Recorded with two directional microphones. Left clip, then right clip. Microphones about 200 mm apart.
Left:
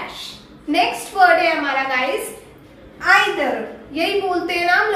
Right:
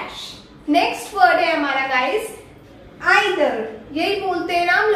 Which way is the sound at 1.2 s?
10° right (ahead or behind).